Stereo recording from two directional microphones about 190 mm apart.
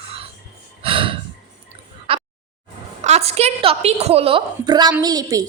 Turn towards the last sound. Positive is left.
turn(degrees=-20)  # may be behind; listen again after turning